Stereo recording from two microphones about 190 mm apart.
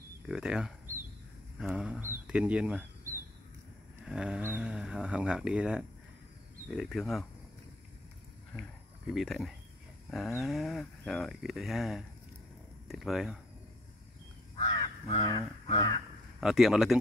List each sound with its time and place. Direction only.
0.3 s speech: 5° right (ahead or behind)
8.5 s a sound: centre (ahead or behind)
10.1 s speech: centre (ahead or behind)
14.6 s crow: 25° left (ahead or behind)
15.7 s speech: 20° left (ahead or behind)
16.3 s speech: centre (ahead or behind)